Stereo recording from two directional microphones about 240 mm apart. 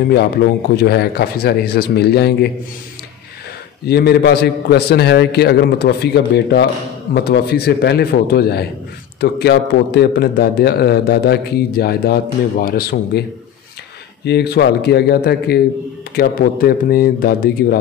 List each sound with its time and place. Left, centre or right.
0.7 s a man's voice: left
3.8 s a man's voice: left
14.2 s a man's voice: left